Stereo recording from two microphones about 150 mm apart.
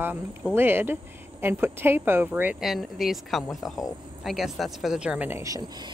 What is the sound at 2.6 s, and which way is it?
Speech, centre (ahead or behind).